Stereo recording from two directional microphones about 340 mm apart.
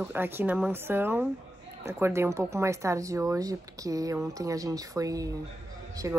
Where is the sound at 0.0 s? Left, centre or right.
Centre.